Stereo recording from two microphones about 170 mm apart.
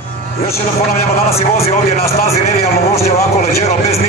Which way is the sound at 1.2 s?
35° left (ahead or behind).